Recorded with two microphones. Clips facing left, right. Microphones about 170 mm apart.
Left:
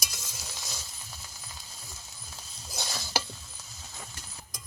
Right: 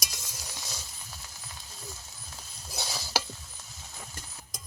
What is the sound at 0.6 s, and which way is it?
Coin, centre (ahead or behind).